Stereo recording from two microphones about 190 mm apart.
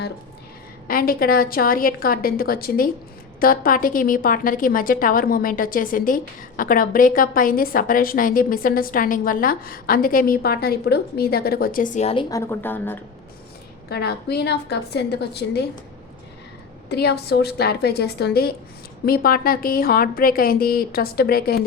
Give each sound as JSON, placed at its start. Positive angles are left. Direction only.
{"t": 0.9, "sound": "a woman's voice", "side_deg": 50}
{"t": 12.3, "sound": "a woman's voice", "side_deg": 15}
{"t": 13.9, "sound": "a woman's voice", "side_deg": 60}
{"t": 16.9, "sound": "a woman's voice", "side_deg": 60}